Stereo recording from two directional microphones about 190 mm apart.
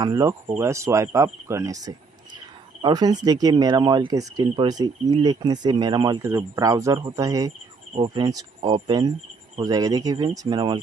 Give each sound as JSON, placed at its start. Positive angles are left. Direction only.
{"t": 0.0, "sound": "speech", "side_deg": -20}